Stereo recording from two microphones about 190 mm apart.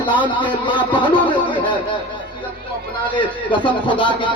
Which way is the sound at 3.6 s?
25° left (ahead or behind).